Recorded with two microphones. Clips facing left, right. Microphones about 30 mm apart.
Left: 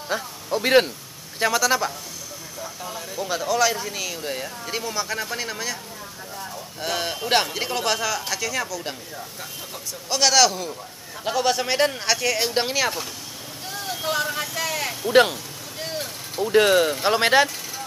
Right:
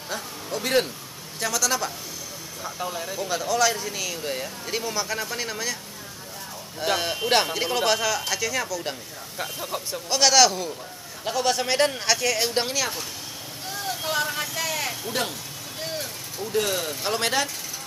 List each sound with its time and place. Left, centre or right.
0.1 s speech: left
2.6 s speech: centre
3.2 s speech: centre
6.8 s speech: centre
9.4 s speech: right
10.0 s speech: centre
13.7 s vehicle: centre
16.5 s speech: left